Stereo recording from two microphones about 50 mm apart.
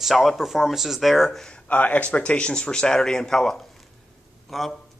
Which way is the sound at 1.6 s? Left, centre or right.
Left.